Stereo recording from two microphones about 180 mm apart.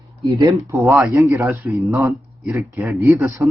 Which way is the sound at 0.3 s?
20° right (ahead or behind).